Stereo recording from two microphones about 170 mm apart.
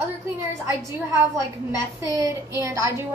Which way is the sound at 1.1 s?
15° right (ahead or behind).